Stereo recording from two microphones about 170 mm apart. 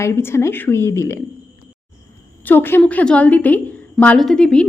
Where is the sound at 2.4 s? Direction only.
10° left (ahead or behind).